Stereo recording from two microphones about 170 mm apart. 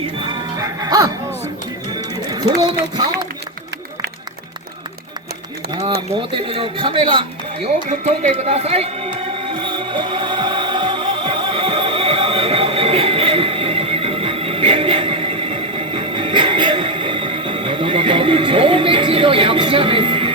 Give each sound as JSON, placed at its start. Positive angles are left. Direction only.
{"t": 0.2, "sound": "music", "side_deg": -25}
{"t": 2.3, "sound": "speech", "side_deg": -25}
{"t": 6.1, "sound": "speech", "side_deg": -30}
{"t": 7.9, "sound": "a man's voice", "side_deg": -40}
{"t": 9.5, "sound": "music", "side_deg": -30}